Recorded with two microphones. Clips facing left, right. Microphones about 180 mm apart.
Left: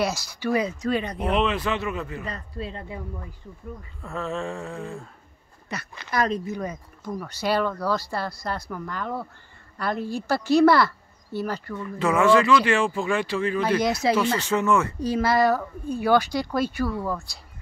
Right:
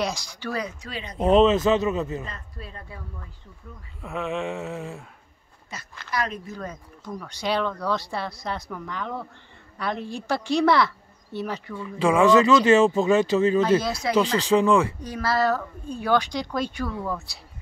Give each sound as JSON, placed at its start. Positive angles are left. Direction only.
{"t": 0.0, "sound": "speech", "side_deg": 5}
{"t": 0.8, "sound": "speech", "side_deg": 55}
{"t": 1.2, "sound": "speech", "side_deg": -25}
{"t": 2.2, "sound": "speech", "side_deg": 30}
{"t": 4.0, "sound": "a sound", "side_deg": -15}
{"t": 5.7, "sound": "speech", "side_deg": 70}
{"t": 6.0, "sound": "speech", "side_deg": 50}
{"t": 6.4, "sound": "speech", "side_deg": 20}
{"t": 6.7, "sound": "speech", "side_deg": 5}
{"t": 13.8, "sound": "speech", "side_deg": 25}
{"t": 14.1, "sound": "a sound", "side_deg": -15}
{"t": 15.0, "sound": "speech", "side_deg": 25}